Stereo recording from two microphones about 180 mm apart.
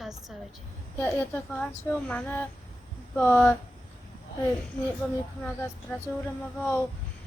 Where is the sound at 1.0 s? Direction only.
10° left (ahead or behind).